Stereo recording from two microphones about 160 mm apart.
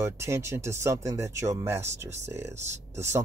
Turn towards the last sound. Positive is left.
turn(degrees=-15)  # may be behind; listen again after turning